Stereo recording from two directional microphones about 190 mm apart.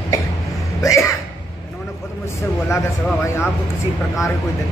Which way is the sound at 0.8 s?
15° left (ahead or behind).